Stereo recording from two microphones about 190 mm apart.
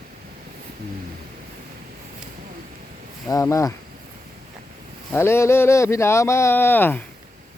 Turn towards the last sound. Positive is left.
turn(degrees=10)  # may be behind; listen again after turning